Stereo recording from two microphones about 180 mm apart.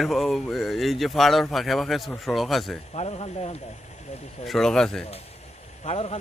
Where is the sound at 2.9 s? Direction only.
35° left (ahead or behind).